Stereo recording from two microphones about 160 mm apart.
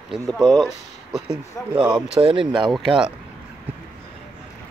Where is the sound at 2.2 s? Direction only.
35° right (ahead or behind).